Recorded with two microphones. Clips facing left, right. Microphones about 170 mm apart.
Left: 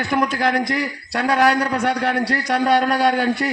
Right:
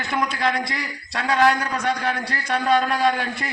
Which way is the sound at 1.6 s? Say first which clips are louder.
Left 4 dB; 65° left (ahead or behind).